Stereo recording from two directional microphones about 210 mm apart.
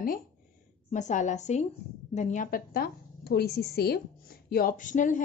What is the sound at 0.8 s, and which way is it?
A woman's voice, 35° left (ahead or behind).